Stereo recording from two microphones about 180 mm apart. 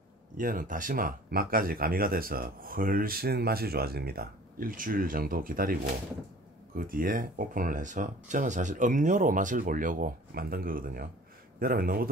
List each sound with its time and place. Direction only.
0.4 s speech: 50° right (ahead or behind)
6.9 s speech: 50° right (ahead or behind)